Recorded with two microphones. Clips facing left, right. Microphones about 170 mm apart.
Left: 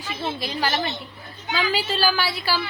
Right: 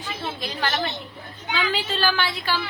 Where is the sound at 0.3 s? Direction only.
10° left (ahead or behind).